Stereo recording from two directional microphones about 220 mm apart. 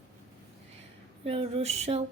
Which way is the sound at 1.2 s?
25° right (ahead or behind).